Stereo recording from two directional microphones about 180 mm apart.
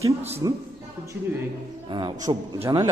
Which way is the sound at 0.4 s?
20° right (ahead or behind).